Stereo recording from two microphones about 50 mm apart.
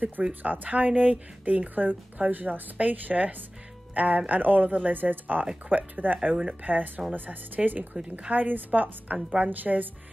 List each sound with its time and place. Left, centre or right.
0.0 s speech: right